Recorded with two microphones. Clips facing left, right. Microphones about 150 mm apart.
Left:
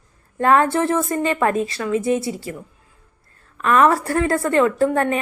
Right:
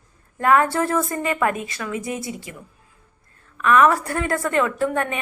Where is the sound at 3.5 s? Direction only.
35° left (ahead or behind).